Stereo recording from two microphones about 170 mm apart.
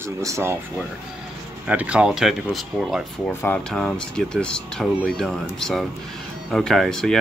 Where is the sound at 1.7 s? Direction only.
5° right (ahead or behind).